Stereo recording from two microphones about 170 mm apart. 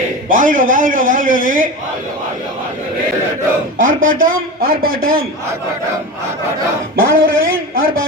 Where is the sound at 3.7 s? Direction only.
55° right (ahead or behind).